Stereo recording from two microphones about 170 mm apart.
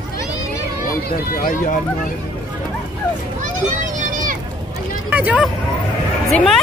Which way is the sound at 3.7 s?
50° right (ahead or behind).